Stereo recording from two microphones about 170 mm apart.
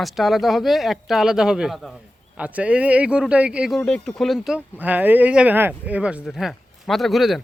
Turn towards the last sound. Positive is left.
turn(degrees=0)  # may be behind; listen again after turning